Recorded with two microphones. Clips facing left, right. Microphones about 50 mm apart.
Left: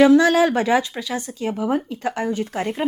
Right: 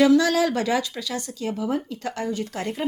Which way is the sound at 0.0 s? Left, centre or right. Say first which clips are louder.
Left 4 dB; left.